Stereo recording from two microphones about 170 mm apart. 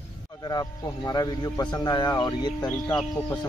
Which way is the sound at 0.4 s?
20° left (ahead or behind).